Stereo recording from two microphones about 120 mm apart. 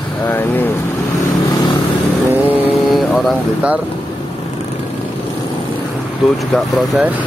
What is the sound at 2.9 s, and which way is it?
Vehicle, centre (ahead or behind).